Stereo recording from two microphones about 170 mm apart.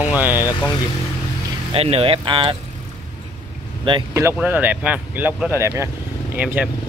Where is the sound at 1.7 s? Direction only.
35° right (ahead or behind).